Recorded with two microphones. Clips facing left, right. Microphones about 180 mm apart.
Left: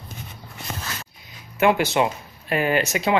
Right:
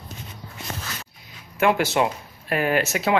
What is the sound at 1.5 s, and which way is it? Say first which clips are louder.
Speech: left 1 dB; centre (ahead or behind).